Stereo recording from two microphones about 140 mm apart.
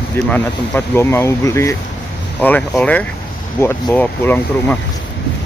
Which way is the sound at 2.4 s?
10° left (ahead or behind).